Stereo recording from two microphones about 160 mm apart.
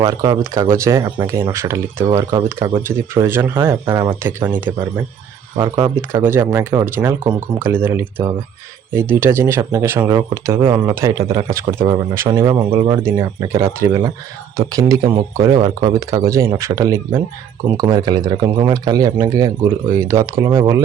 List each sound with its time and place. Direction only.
0.0 s speech: 20° right (ahead or behind)
5.5 s speech: 25° right (ahead or behind)
6.0 s speech: 15° right (ahead or behind); by 10.9 s 30° right (ahead or behind)
11.3 s speech: 20° right (ahead or behind)